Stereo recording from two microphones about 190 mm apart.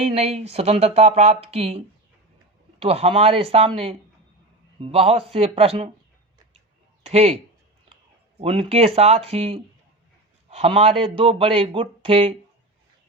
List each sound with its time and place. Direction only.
0.0 s speech: 35° right (ahead or behind)
7.0 s speech: 30° right (ahead or behind)
8.4 s a man's voice: 30° right (ahead or behind)